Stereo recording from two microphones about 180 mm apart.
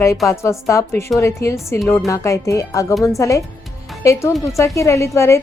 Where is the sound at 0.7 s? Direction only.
15° left (ahead or behind).